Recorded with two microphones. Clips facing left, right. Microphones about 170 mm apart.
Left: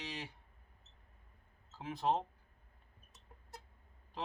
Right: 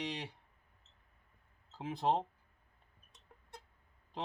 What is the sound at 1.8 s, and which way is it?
Speech, 25° right (ahead or behind).